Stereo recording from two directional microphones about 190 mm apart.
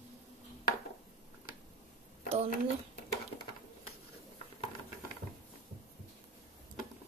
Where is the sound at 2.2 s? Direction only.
30° right (ahead or behind).